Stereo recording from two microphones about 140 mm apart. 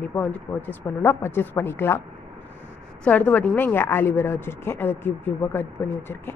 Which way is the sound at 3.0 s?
10° left (ahead or behind).